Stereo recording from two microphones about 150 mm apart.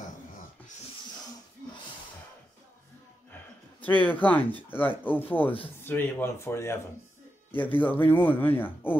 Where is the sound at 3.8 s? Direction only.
10° left (ahead or behind).